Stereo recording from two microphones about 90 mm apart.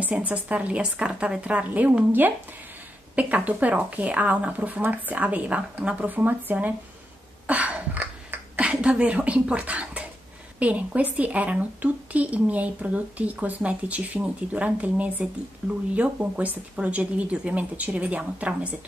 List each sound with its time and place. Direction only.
0.0 s a woman's voice: 15° right (ahead or behind)
7.4 s a sound: 15° right (ahead or behind)
10.6 s a woman's voice: 15° right (ahead or behind)